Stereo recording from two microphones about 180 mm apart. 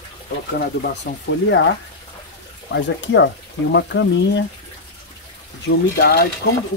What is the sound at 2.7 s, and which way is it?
Speech, 75° left (ahead or behind).